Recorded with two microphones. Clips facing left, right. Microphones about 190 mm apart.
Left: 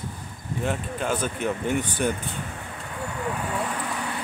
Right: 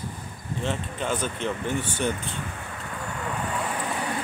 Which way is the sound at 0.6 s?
10° left (ahead or behind).